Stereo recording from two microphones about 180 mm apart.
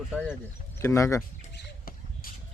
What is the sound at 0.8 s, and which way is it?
Speech, 15° left (ahead or behind).